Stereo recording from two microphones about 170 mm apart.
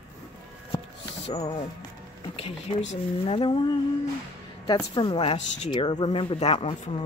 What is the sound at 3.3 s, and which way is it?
Speech, 30° left (ahead or behind).